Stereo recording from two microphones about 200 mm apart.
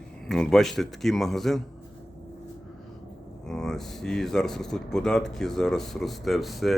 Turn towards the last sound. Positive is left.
turn(degrees=0)  # may be behind; listen again after turning